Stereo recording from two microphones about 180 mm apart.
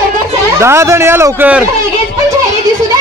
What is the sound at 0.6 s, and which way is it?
Speech, 15° right (ahead or behind).